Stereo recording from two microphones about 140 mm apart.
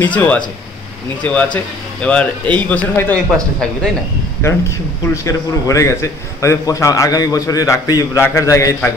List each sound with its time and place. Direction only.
0.0 s a man's voice: 10° left (ahead or behind)
4.4 s a man's voice: 20° left (ahead or behind)